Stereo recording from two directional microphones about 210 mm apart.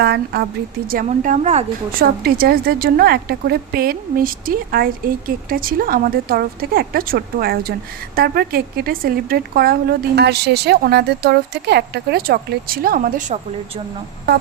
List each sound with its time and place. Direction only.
0.0 s a woman's voice: 50° right (ahead or behind)
2.2 s speech: 45° right (ahead or behind)